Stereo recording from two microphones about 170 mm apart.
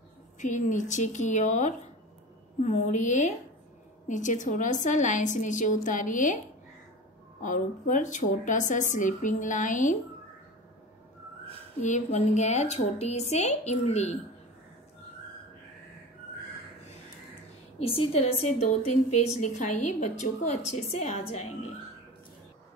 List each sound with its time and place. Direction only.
0.4 s a woman's voice: 45° left (ahead or behind)
7.4 s a woman's voice: 50° left (ahead or behind)
11.8 s a woman's voice: 45° left (ahead or behind)
17.7 s a woman's voice: 35° left (ahead or behind)